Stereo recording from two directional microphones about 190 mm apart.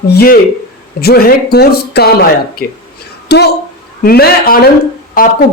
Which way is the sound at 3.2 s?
60° left (ahead or behind).